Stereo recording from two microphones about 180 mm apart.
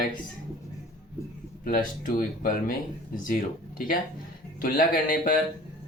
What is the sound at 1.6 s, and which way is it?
Speech, 50° left (ahead or behind).